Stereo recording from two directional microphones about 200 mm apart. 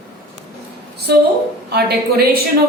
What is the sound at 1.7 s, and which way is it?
Speech, 55° right (ahead or behind).